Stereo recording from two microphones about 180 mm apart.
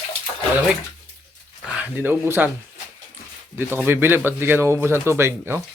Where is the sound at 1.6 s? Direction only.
10° right (ahead or behind).